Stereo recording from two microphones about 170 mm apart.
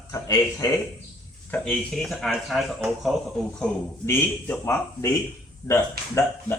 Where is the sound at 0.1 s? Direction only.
20° left (ahead or behind).